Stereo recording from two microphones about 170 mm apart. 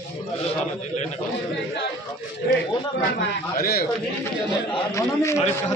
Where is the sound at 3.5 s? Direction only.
65° left (ahead or behind).